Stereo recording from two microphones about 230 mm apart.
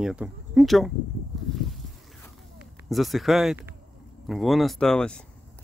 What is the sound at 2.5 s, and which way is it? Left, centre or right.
Speech, centre.